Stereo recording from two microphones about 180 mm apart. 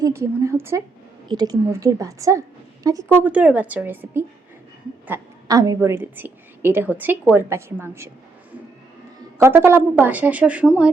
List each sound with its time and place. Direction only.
0.0 s a woman's voice: 15° right (ahead or behind)
9.4 s a woman's voice: 15° right (ahead or behind)